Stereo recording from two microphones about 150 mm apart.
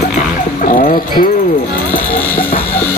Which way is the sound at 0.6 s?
70° left (ahead or behind).